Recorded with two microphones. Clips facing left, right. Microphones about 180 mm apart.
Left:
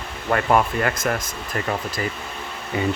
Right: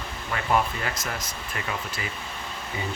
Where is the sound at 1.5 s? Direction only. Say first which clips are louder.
Left 8 dB; 40° left (ahead or behind).